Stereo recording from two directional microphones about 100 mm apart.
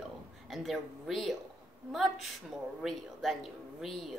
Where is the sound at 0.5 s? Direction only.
Centre (ahead or behind).